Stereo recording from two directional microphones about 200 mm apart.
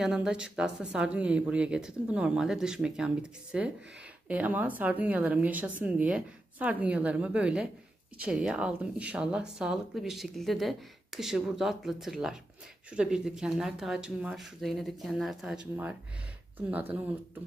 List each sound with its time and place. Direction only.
0.0 s speech: 5° right (ahead or behind)